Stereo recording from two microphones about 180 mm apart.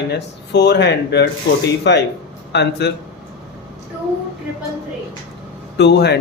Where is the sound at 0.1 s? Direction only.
70° left (ahead or behind).